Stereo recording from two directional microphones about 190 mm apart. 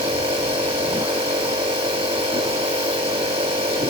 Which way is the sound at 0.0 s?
30° right (ahead or behind).